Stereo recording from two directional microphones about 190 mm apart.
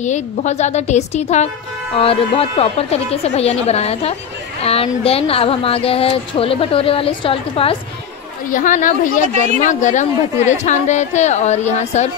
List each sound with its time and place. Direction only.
0.0 s speech: 40° left (ahead or behind)
8.5 s speech: 45° left (ahead or behind)